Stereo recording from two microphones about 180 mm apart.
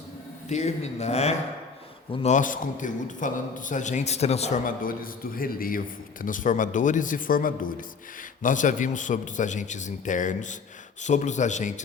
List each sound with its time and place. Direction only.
0.4 s a man's voice: 40° left (ahead or behind)